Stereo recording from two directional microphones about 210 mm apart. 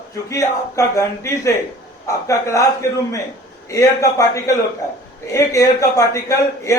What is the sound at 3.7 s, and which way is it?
A man's voice, 15° left (ahead or behind).